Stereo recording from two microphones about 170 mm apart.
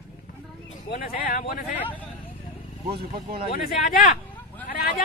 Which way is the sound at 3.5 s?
55° left (ahead or behind).